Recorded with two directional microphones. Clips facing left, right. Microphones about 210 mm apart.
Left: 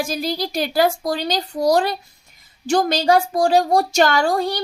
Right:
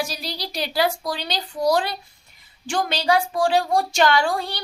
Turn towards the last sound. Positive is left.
turn(degrees=40)  # may be behind; listen again after turning